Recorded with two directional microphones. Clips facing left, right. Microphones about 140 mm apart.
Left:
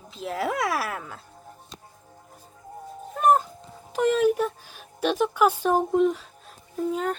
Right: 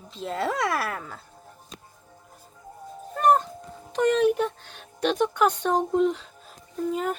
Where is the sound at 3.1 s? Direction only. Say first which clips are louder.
Even; 5° left (ahead or behind).